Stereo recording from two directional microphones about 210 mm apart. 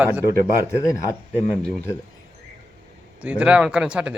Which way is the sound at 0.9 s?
10° left (ahead or behind).